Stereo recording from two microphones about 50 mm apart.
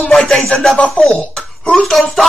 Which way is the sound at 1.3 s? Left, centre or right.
Centre.